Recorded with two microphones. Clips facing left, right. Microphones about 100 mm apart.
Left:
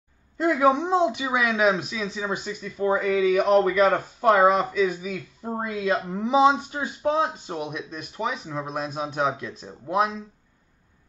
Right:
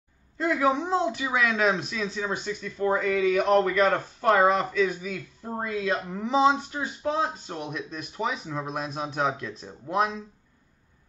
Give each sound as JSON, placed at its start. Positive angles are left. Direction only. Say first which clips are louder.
{"t": 0.6, "sound": "speech", "louder": "left 4 dB", "side_deg": 20}